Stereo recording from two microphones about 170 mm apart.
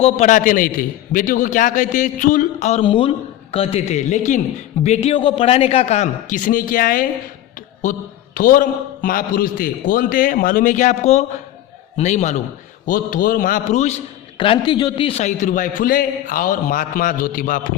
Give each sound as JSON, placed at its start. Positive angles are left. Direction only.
{"t": 0.0, "sound": "a man's voice", "side_deg": 45}
{"t": 2.8, "sound": "a man's voice", "side_deg": 30}
{"t": 8.4, "sound": "a man's voice", "side_deg": 55}
{"t": 12.8, "sound": "a man's voice", "side_deg": 55}
{"t": 14.3, "sound": "a man's voice", "side_deg": 30}